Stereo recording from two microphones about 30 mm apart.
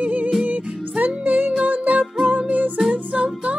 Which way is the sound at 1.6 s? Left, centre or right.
Right.